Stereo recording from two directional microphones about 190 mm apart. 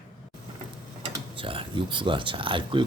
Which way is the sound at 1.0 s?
30° right (ahead or behind).